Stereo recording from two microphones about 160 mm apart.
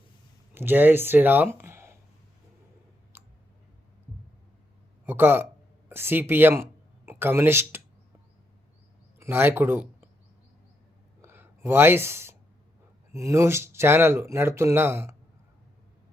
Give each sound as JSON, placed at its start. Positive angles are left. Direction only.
{"t": 0.5, "sound": "speech", "side_deg": -15}
{"t": 5.0, "sound": "speech", "side_deg": -15}
{"t": 9.1, "sound": "speech", "side_deg": -15}
{"t": 11.2, "sound": "a sound", "side_deg": -15}
{"t": 13.1, "sound": "speech", "side_deg": -20}